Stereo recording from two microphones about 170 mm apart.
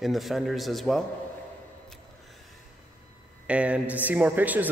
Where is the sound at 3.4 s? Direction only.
5° right (ahead or behind).